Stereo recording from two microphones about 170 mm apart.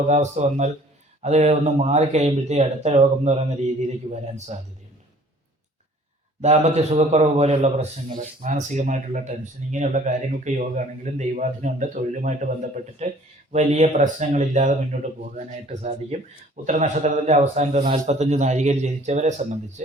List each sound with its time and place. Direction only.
0.1 s a man's voice: 45° right (ahead or behind)
6.4 s a man's voice: 40° right (ahead or behind)